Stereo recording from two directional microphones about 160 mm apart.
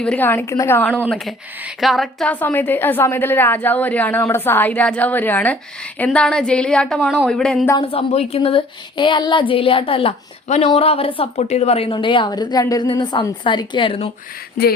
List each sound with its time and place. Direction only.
0.0 s a woman's voice: 10° left (ahead or behind)
1.6 s a woman's voice: centre (ahead or behind)
7.8 s speech: 35° left (ahead or behind)
14.6 s a sound: 65° left (ahead or behind)